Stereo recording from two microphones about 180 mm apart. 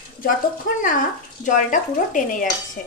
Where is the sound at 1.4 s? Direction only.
45° left (ahead or behind).